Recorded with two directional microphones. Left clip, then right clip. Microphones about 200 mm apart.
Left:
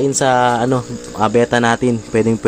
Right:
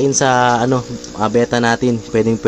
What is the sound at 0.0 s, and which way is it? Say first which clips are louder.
A man's voice: even; centre (ahead or behind).